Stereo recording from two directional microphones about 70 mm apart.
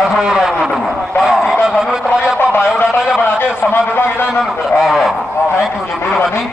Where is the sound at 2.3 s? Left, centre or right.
Left.